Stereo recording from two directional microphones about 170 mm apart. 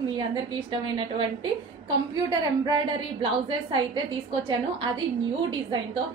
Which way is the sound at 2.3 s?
25° right (ahead or behind).